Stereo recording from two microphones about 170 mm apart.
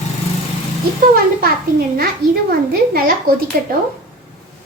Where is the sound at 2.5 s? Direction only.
65° right (ahead or behind).